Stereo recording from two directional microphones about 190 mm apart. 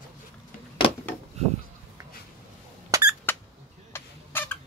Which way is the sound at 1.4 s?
35° right (ahead or behind).